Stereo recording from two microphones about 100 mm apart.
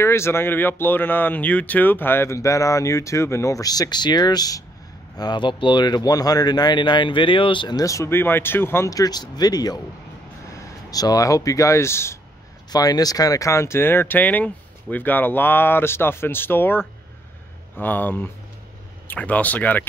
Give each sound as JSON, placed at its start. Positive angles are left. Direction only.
{"t": 0.0, "sound": "speech", "side_deg": 25}
{"t": 7.8, "sound": "speech", "side_deg": 30}
{"t": 8.9, "sound": "speech", "side_deg": 40}
{"t": 12.7, "sound": "speech", "side_deg": 40}